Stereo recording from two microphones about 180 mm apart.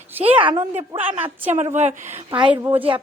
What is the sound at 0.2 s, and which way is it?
A woman's voice, 30° right (ahead or behind).